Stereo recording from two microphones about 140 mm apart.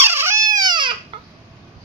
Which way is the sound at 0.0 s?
15° right (ahead or behind).